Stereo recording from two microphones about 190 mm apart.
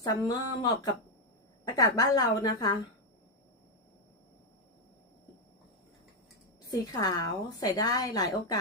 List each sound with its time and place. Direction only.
0.3 s a woman's voice: 20° left (ahead or behind)
6.7 s a woman's voice: 20° left (ahead or behind)